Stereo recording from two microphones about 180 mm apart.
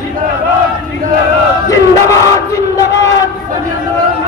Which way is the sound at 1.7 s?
20° left (ahead or behind).